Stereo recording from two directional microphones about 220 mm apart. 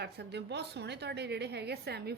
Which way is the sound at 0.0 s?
50° right (ahead or behind).